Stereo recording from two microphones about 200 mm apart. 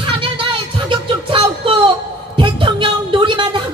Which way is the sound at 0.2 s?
25° right (ahead or behind).